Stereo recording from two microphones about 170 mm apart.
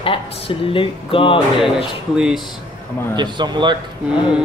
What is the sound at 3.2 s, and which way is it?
Speech, 25° right (ahead or behind).